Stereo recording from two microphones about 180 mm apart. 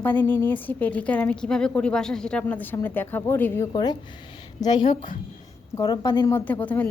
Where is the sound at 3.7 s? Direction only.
25° left (ahead or behind).